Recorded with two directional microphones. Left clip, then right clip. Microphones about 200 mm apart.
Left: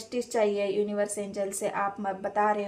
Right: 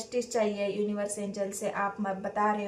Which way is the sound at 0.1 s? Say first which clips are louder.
Left 3 dB; 45° left (ahead or behind).